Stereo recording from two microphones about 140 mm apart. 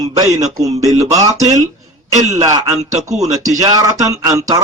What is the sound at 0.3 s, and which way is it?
Speech, 55° right (ahead or behind).